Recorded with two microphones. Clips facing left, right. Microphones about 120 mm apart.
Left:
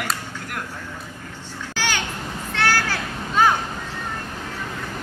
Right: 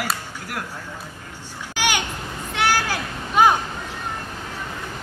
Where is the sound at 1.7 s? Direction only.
15° right (ahead or behind).